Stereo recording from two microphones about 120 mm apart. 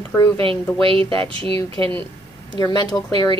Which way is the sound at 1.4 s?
50° right (ahead or behind).